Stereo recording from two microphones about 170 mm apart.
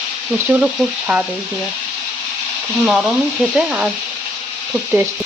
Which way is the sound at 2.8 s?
Centre (ahead or behind).